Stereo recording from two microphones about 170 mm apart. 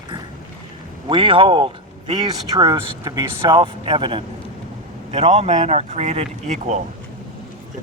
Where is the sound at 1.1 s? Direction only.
30° right (ahead or behind).